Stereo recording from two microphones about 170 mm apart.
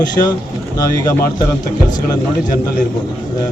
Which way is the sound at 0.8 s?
20° left (ahead or behind).